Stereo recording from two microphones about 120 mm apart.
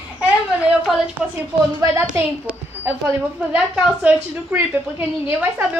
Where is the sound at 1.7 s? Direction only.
25° right (ahead or behind).